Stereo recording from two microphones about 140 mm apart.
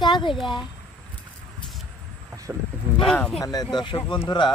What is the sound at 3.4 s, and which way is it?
A man's voice, 30° left (ahead or behind).